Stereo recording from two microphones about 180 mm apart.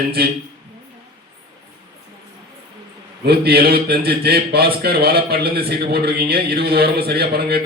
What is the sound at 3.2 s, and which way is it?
Speech, 60° right (ahead or behind).